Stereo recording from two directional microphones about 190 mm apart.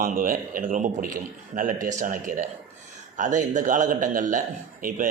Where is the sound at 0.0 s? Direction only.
45° right (ahead or behind).